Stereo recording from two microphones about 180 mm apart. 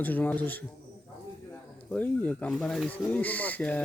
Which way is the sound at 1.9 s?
10° left (ahead or behind).